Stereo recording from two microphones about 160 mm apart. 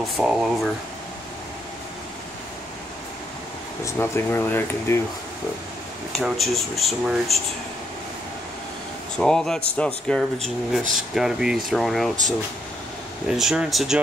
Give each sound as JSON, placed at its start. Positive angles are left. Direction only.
{"t": 0.2, "sound": "speech", "side_deg": -5}
{"t": 3.8, "sound": "speech", "side_deg": 15}
{"t": 6.1, "sound": "speech", "side_deg": 0}
{"t": 9.1, "sound": "speech", "side_deg": 5}
{"t": 10.8, "sound": "speech", "side_deg": -55}
{"t": 11.1, "sound": "speech", "side_deg": -5}
{"t": 13.3, "sound": "speech", "side_deg": -5}